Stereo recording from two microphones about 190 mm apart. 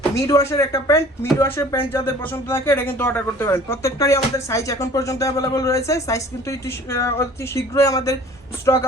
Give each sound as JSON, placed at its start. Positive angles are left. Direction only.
{"t": 0.1, "sound": "speech", "side_deg": 15}